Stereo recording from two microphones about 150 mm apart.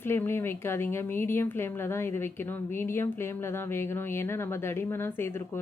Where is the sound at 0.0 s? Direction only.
15° left (ahead or behind).